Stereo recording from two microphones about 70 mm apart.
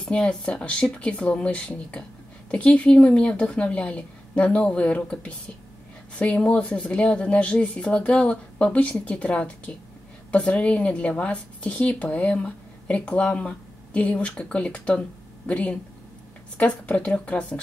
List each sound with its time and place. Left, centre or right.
0.0 s speech: centre